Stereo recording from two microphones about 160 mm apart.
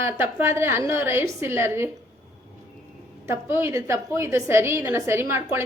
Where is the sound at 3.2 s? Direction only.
15° right (ahead or behind).